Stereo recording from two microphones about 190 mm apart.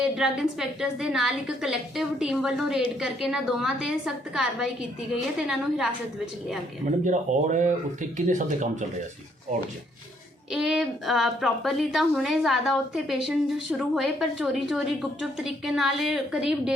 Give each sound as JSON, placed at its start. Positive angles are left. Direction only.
{"t": 0.0, "sound": "a woman's voice", "side_deg": -5}
{"t": 7.0, "sound": "speech", "side_deg": -40}
{"t": 10.5, "sound": "a woman's voice", "side_deg": -5}